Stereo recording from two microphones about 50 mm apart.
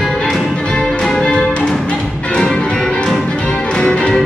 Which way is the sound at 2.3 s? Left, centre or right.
Centre.